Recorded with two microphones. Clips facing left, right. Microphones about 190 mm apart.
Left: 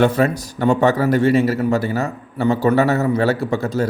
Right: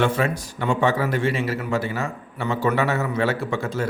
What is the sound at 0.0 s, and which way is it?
A man's voice, 40° left (ahead or behind).